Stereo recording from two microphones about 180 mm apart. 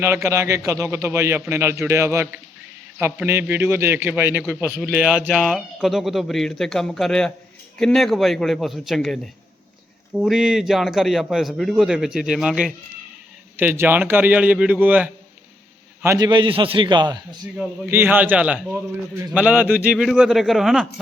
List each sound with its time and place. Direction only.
0.0 s a man's voice: 15° right (ahead or behind)
16.0 s a man's voice: 20° right (ahead or behind)
17.6 s a man's voice: 10° right (ahead or behind)